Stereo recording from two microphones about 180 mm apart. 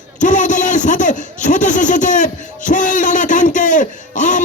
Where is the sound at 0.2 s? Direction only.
45° left (ahead or behind).